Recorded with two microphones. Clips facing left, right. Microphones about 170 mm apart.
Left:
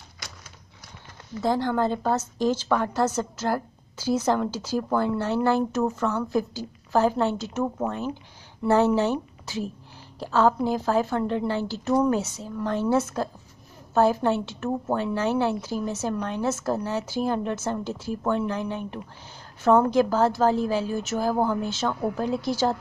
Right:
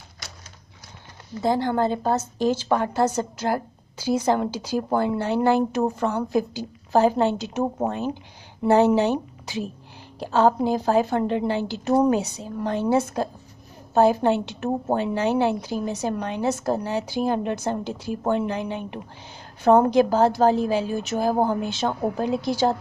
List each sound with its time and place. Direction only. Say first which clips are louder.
1.4 s a woman's voice: right 2 dB; 15° right (ahead or behind)